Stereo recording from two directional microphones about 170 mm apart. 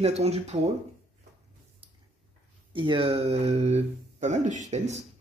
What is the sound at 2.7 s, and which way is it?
A man's voice, 30° right (ahead or behind).